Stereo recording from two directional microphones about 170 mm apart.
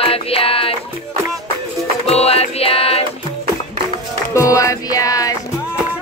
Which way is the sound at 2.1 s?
35° left (ahead or behind).